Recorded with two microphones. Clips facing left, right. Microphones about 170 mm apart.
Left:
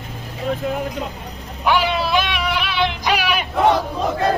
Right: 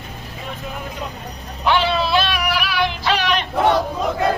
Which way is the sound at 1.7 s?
10° left (ahead or behind).